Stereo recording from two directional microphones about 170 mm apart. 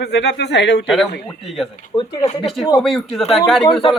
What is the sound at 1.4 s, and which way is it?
Speech, centre (ahead or behind).